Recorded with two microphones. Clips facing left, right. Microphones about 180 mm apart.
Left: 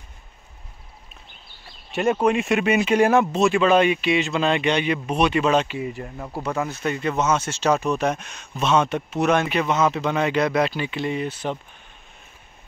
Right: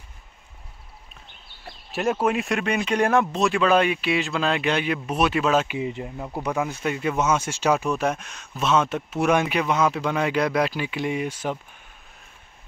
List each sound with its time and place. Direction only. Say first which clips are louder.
1.9 s speech: left 3 dB; centre (ahead or behind)
5.7 s speech: right 1 dB; 20° right (ahead or behind)